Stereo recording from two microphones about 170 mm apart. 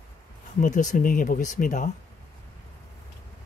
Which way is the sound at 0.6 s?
45° left (ahead or behind).